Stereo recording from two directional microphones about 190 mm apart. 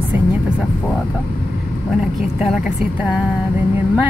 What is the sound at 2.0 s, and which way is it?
Speech, 5° right (ahead or behind).